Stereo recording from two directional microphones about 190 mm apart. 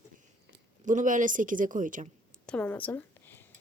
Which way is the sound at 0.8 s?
40° right (ahead or behind).